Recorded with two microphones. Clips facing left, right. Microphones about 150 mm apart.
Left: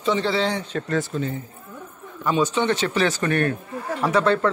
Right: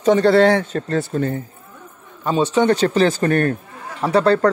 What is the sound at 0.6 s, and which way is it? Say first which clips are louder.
Speech: right 3 dB; 35° right (ahead or behind).